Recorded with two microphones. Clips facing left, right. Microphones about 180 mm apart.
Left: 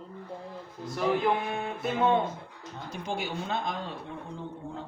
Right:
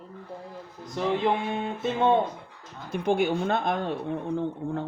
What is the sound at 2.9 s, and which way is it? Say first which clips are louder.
Speech: right 10 dB; 55° right (ahead or behind).